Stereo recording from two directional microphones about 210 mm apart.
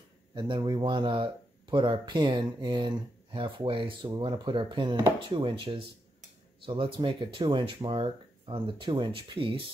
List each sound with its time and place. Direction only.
0.3 s speech: 20° right (ahead or behind)